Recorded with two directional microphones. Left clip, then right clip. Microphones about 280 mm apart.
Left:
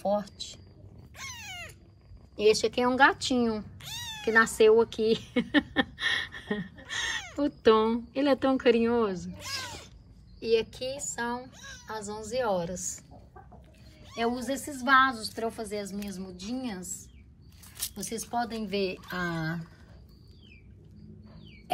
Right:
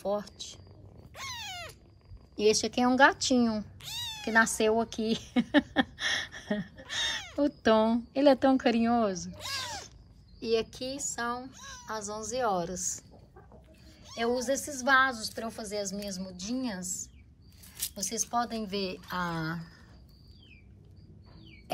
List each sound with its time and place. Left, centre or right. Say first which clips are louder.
0.1 s speech: left 3 dB; centre
1.2 s dog: right 1 dB; right
2.3 s speech: left 2 dB; centre
9.3 s speech: even; right
10.4 s speech: left 3 dB; centre
14.1 s speech: right 1 dB; centre
18.2 s speech: right 1 dB; centre